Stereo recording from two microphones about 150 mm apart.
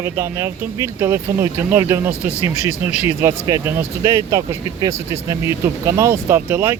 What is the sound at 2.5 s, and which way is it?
Speech, 45° left (ahead or behind).